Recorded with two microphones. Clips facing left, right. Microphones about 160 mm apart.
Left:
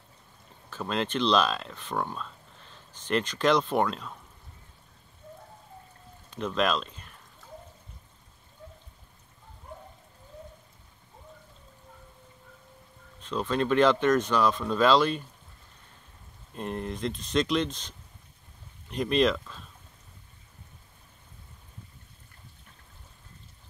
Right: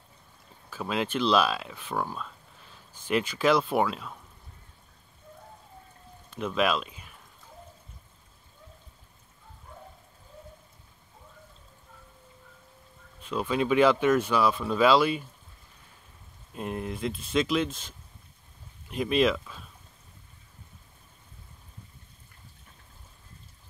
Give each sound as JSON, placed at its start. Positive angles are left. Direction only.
{"t": 0.7, "sound": "speech", "side_deg": -5}
{"t": 6.3, "sound": "speech", "side_deg": -5}
{"t": 13.2, "sound": "speech", "side_deg": -10}
{"t": 16.5, "sound": "speech", "side_deg": -5}